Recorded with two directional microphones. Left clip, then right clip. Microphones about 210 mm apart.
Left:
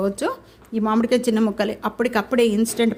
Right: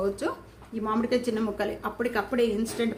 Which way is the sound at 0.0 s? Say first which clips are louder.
Left 5 dB; 45° left (ahead or behind).